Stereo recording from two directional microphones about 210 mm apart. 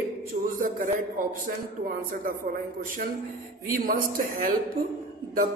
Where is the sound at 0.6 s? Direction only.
40° right (ahead or behind).